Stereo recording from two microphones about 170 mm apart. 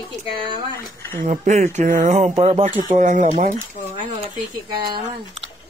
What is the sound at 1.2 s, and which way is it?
Speech, 45° right (ahead or behind).